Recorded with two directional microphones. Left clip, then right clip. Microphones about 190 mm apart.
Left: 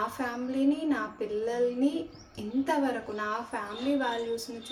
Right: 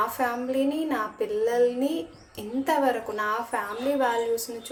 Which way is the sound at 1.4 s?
15° right (ahead or behind).